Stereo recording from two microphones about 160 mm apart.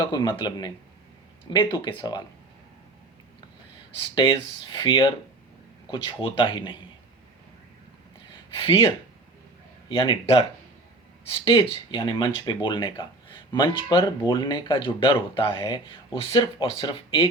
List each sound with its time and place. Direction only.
0.0 s speech: 25° left (ahead or behind)
4.1 s speech: 30° left (ahead or behind)
8.3 s a sound: 35° left (ahead or behind)
9.9 s speech: 30° left (ahead or behind)
11.4 s speech: 35° left (ahead or behind)